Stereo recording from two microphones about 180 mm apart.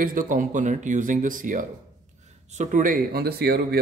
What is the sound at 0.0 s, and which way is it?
Speech, 50° right (ahead or behind).